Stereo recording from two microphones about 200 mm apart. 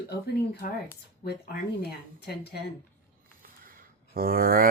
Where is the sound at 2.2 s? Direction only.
55° left (ahead or behind).